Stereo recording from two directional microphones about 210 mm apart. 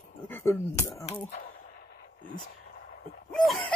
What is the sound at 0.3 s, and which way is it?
Speech, 10° left (ahead or behind).